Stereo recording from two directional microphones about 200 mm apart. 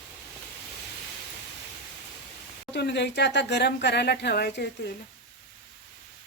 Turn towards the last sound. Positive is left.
turn(degrees=55)  # may be behind; listen again after turning